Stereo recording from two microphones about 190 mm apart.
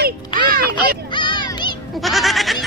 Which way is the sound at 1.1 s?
25° left (ahead or behind).